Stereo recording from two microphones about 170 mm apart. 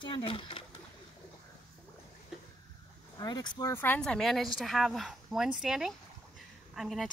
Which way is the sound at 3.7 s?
10° left (ahead or behind).